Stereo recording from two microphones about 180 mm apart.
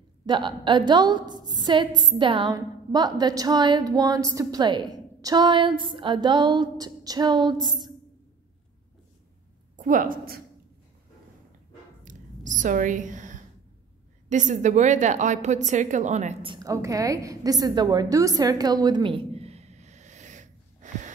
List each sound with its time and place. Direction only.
0.3 s a woman's voice: 25° right (ahead or behind)
9.8 s a woman's voice: 45° right (ahead or behind)
12.0 s a sound: 45° right (ahead or behind)
14.3 s a woman's voice: 40° right (ahead or behind)
16.4 s a woman's voice: 20° right (ahead or behind); by 21.1 s 45° right (ahead or behind)